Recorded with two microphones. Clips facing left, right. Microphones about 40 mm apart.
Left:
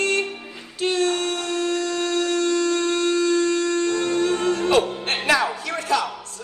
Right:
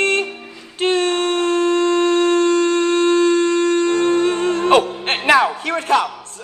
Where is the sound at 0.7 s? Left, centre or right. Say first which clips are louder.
Right 4 dB; right.